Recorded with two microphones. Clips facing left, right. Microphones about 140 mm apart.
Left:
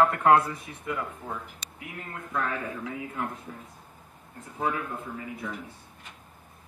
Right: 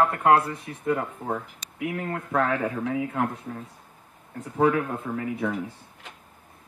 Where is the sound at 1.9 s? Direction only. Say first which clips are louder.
Right 6 dB; 80° right.